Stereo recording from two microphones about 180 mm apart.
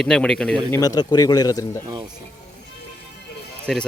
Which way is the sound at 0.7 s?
20° left (ahead or behind).